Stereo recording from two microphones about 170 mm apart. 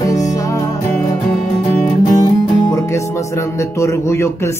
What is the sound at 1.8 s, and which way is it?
Music, 20° left (ahead or behind).